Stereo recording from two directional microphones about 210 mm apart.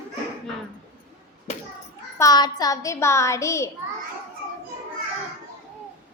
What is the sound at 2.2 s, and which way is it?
A woman's voice, 20° left (ahead or behind).